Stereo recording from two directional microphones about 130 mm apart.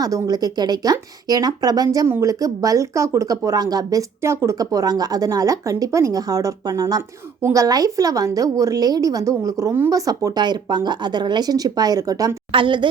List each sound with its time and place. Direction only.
0.0 s speech: 30° right (ahead or behind)
12.5 s a woman's voice: 40° right (ahead or behind)